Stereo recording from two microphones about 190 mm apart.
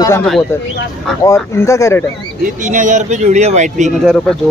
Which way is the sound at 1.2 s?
15° left (ahead or behind).